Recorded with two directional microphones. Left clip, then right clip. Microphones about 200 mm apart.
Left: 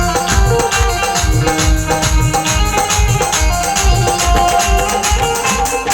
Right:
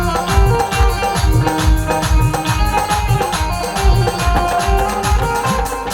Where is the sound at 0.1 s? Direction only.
20° right (ahead or behind).